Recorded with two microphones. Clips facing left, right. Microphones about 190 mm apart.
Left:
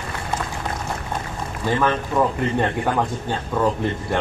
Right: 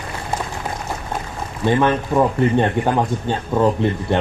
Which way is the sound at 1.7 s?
25° right (ahead or behind).